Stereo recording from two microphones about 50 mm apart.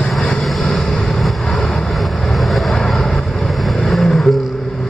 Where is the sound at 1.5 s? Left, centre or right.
Left.